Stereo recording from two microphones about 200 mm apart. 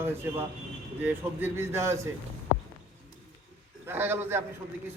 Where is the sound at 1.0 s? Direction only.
10° right (ahead or behind).